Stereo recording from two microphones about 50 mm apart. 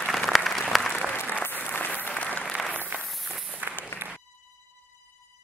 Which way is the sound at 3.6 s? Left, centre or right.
Right.